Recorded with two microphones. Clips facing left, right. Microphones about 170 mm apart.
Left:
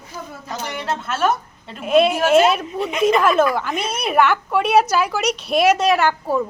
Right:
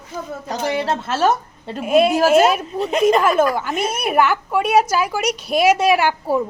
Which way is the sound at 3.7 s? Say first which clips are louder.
Right 2 dB; 50° right (ahead or behind).